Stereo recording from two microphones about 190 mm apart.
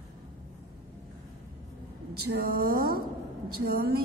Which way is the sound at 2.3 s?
55° right (ahead or behind).